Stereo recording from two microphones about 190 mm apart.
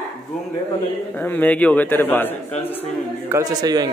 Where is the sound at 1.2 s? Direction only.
10° left (ahead or behind).